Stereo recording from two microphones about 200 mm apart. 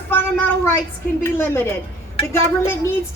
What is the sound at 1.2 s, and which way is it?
Speech, 10° left (ahead or behind).